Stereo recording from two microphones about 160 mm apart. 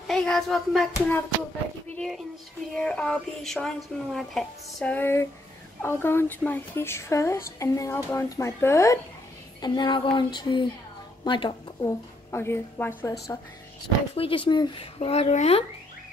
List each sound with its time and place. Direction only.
0.1 s speech: centre (ahead or behind)
0.9 s speech: 15° left (ahead or behind)
2.0 s a woman's voice: centre (ahead or behind); by 11.9 s 30° left (ahead or behind)
12.3 s speech: 15° left (ahead or behind)
14.1 s speech: 35° left (ahead or behind)